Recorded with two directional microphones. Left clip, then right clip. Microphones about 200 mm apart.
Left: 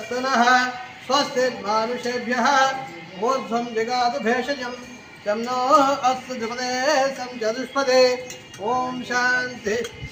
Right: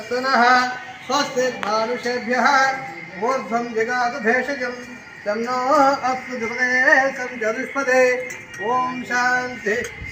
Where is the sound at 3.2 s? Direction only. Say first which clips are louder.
Right 1 dB; 5° right (ahead or behind).